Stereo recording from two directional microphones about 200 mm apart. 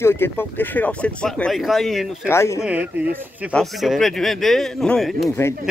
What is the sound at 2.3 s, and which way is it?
Speech, 15° left (ahead or behind).